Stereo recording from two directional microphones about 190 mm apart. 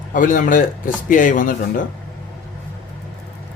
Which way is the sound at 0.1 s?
45° left (ahead or behind).